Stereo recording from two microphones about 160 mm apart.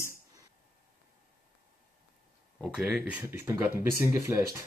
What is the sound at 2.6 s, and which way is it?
Speech, 5° right (ahead or behind).